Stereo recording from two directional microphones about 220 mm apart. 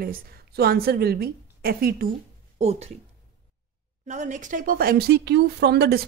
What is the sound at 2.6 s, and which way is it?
Speech, 30° right (ahead or behind).